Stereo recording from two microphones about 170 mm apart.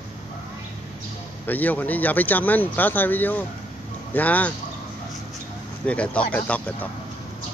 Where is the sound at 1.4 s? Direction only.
10° left (ahead or behind).